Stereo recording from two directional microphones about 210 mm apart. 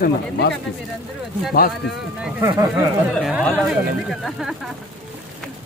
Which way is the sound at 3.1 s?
Centre (ahead or behind).